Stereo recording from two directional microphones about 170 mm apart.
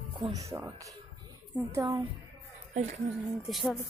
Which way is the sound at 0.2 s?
20° right (ahead or behind).